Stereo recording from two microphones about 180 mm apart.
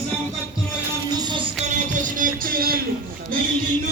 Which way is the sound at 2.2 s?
55° right (ahead or behind).